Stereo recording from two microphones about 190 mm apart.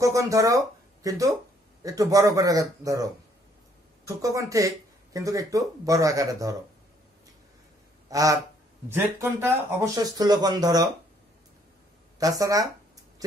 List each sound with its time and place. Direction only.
0.0 s speech: 15° right (ahead or behind)
8.1 s duck: 15° right (ahead or behind)
8.8 s speech: 10° right (ahead or behind)
12.2 s speech: 20° right (ahead or behind)